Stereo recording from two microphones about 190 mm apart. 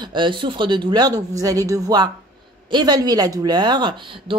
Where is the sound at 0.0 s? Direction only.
25° right (ahead or behind).